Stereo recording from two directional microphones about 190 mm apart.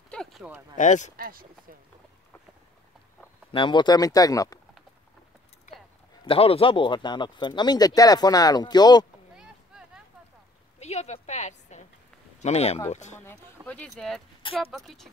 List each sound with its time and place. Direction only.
0.1 s a sound: centre (ahead or behind)
0.7 s speech: 40° left (ahead or behind)
1.1 s speech: 50° right (ahead or behind)
3.5 s speech: 25° left (ahead or behind)
6.2 s speech: 30° left (ahead or behind)
9.4 s boat: 5° right (ahead or behind)
10.8 s a woman's voice: 35° left (ahead or behind)
13.7 s speech: 5° left (ahead or behind)